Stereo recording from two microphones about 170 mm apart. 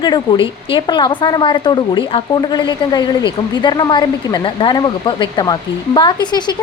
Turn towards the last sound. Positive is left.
turn(degrees=25)  # may be behind; listen again after turning